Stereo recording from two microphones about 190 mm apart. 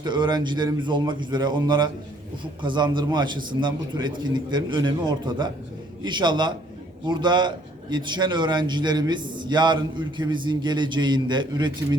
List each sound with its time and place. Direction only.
0.0 s a man's voice: 25° right (ahead or behind)